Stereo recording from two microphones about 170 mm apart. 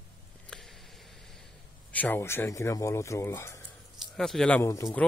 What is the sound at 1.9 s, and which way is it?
Speech, 10° left (ahead or behind).